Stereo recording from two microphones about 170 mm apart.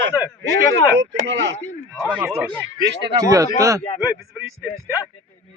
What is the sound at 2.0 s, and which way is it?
Speech, 10° right (ahead or behind).